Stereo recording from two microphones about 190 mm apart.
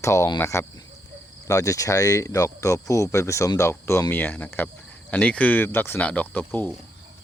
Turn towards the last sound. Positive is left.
turn(degrees=10)  # may be behind; listen again after turning